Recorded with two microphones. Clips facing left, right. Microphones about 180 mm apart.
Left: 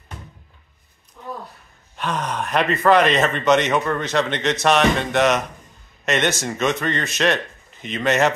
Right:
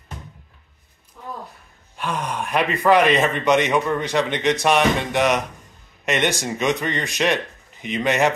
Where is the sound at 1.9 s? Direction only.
10° right (ahead or behind).